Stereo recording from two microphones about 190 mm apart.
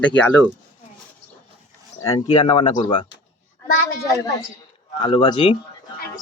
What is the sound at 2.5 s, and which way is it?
Speech, 30° left (ahead or behind).